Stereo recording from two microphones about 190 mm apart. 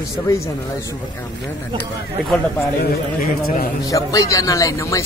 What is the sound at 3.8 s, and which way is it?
Speech, 15° left (ahead or behind).